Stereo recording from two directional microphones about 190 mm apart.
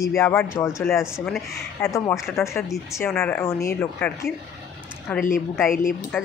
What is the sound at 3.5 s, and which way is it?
Speech, 15° left (ahead or behind).